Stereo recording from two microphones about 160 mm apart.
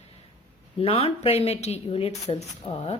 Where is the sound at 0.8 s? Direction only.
35° left (ahead or behind).